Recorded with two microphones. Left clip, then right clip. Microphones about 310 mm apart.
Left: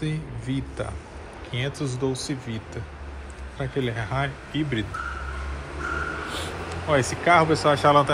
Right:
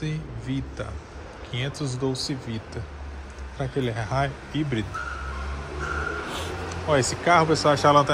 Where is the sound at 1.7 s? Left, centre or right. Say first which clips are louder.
Left 1 dB; right.